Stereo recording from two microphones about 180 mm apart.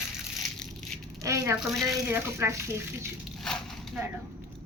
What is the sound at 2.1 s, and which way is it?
Speech, 15° right (ahead or behind).